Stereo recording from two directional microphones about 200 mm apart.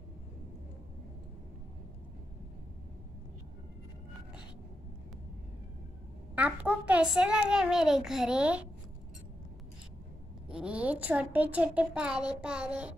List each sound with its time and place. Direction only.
6.3 s a woman's voice: 5° right (ahead or behind)
10.5 s a woman's voice: 5° right (ahead or behind)